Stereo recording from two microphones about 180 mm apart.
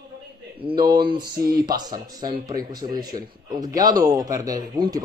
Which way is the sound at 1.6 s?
20° right (ahead or behind).